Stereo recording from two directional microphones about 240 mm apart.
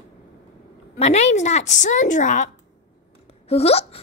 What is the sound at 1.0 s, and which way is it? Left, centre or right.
A woman's voice, left.